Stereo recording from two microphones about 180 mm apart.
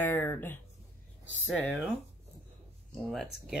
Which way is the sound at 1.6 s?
Centre (ahead or behind).